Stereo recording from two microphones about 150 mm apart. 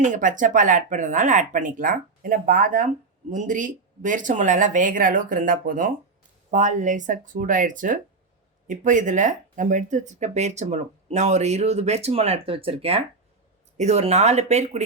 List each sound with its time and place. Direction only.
0.0 s speech: 60° right (ahead or behind)